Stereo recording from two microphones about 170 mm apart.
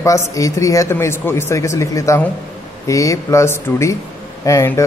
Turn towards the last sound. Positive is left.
turn(degrees=20)  # may be behind; listen again after turning